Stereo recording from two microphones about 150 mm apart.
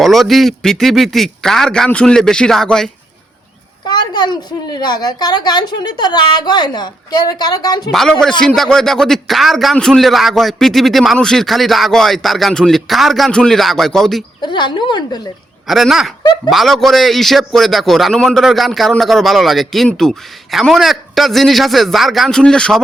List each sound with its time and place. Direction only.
0.0 s a man's voice: centre (ahead or behind)
3.8 s a woman's voice: 30° left (ahead or behind)
8.2 s a man's voice: 5° left (ahead or behind)
14.4 s a woman's voice: 30° left (ahead or behind)
15.6 s a man's voice: centre (ahead or behind)